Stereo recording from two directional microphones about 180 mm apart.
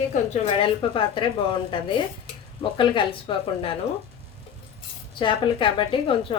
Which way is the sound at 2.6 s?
30° left (ahead or behind).